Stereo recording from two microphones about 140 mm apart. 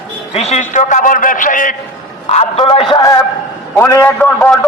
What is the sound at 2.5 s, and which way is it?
Speech, 35° left (ahead or behind).